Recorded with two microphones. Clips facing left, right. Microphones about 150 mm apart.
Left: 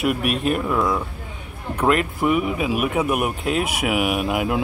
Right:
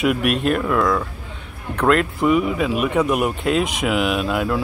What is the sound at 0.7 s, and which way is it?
Speech, 20° left (ahead or behind).